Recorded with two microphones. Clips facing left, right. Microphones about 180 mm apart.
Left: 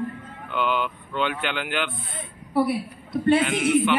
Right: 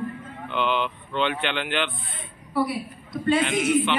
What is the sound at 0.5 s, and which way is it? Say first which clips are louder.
Speech: even; 5° left (ahead or behind).